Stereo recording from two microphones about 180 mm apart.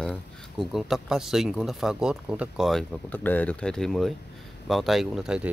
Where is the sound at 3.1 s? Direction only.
10° left (ahead or behind).